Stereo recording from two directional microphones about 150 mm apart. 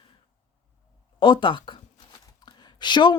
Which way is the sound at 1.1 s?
35° left (ahead or behind).